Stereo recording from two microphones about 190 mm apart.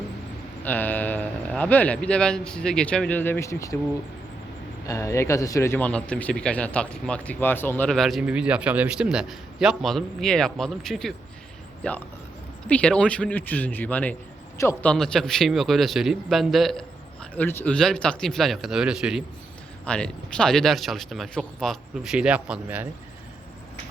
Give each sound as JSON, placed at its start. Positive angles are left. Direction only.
{"t": 0.6, "sound": "speech", "side_deg": 10}
{"t": 4.9, "sound": "speech", "side_deg": 15}
{"t": 17.3, "sound": "speech", "side_deg": 10}